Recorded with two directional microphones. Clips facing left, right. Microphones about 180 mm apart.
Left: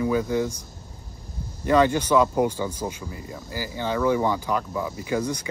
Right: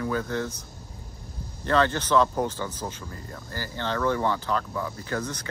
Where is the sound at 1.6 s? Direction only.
10° left (ahead or behind).